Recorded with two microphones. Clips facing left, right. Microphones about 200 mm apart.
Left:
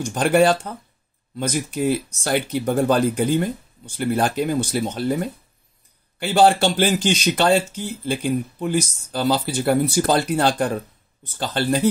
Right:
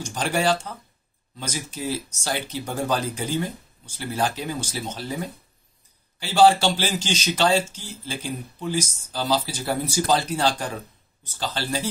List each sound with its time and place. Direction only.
0.0 s speech: 55° left (ahead or behind)